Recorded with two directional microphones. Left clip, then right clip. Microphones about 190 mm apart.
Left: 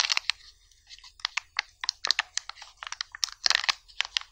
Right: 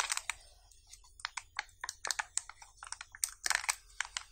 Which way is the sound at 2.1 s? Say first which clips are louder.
Left 9 dB; 15° left (ahead or behind).